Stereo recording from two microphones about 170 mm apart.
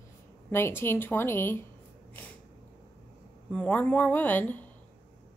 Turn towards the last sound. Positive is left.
turn(degrees=10)  # may be behind; listen again after turning